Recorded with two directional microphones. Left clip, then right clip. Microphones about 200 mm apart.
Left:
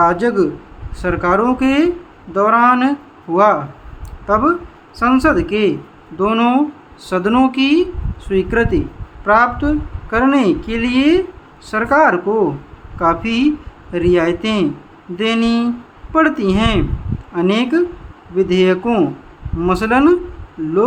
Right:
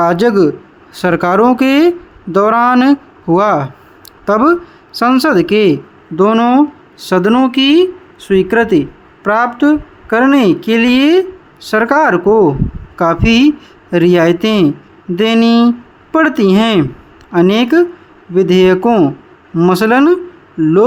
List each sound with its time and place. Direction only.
0.0 s speech: 45° right (ahead or behind)